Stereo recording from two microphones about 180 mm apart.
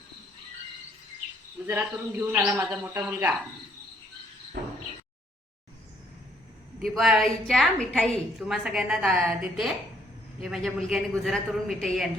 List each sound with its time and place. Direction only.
1.6 s a man's voice: 10° right (ahead or behind)
4.6 s a sound: 60° right (ahead or behind)
6.8 s a woman's voice: centre (ahead or behind)